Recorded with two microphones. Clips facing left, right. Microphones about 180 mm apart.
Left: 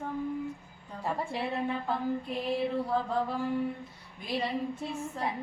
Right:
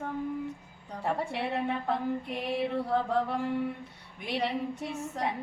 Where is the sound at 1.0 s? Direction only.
65° right (ahead or behind).